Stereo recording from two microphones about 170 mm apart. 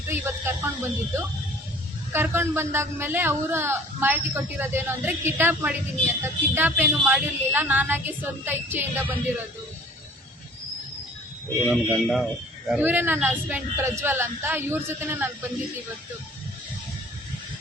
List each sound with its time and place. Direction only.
0.1 s speech: 15° right (ahead or behind)
11.9 s speech: centre (ahead or behind)